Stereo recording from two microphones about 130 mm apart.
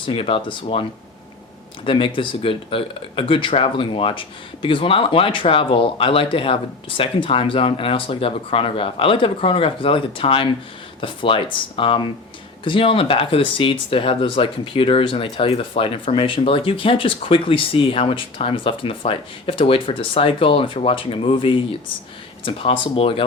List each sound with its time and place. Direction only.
0.0 s speech: 45° left (ahead or behind)